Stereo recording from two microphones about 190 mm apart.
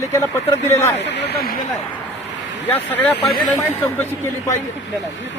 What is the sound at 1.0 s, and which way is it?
Speech, 65° left (ahead or behind).